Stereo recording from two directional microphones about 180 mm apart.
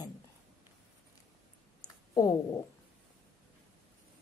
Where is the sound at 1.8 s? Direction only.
20° left (ahead or behind).